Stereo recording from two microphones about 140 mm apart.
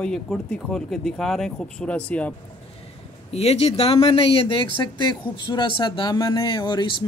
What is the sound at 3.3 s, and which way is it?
Speech, 50° left (ahead or behind).